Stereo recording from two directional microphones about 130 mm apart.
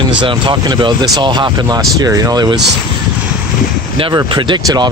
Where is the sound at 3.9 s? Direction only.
40° right (ahead or behind).